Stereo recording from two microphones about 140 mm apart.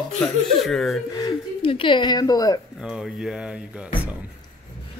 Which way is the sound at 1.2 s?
35° left (ahead or behind).